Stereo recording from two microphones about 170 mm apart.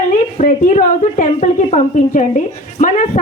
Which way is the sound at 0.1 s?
50° left (ahead or behind).